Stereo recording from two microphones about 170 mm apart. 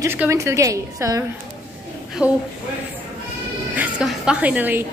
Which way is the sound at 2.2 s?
5° right (ahead or behind).